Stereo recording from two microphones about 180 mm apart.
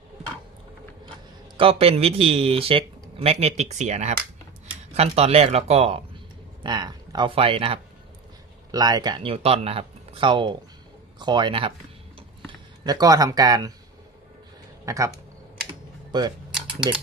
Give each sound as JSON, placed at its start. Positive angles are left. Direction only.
{"t": 1.5, "sound": "speech", "side_deg": -30}
{"t": 14.8, "sound": "speech", "side_deg": -15}
{"t": 16.1, "sound": "speech", "side_deg": -25}
{"t": 16.5, "sound": "typing", "side_deg": -5}